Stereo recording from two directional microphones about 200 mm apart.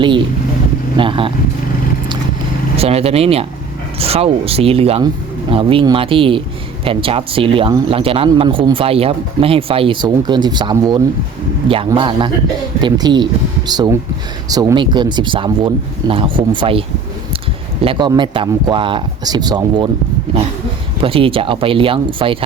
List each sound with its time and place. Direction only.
0.9 s speech: 25° right (ahead or behind)
2.7 s speech: 30° right (ahead or behind)
17.8 s speech: 20° right (ahead or behind)
21.0 s speech: 25° right (ahead or behind)